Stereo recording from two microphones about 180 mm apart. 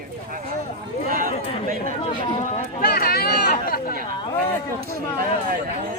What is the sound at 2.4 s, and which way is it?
Speech, 45° left (ahead or behind).